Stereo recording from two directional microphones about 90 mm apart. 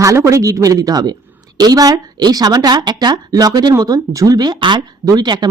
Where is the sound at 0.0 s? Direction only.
35° right (ahead or behind).